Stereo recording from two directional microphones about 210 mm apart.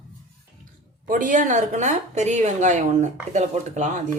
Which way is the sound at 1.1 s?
40° right (ahead or behind).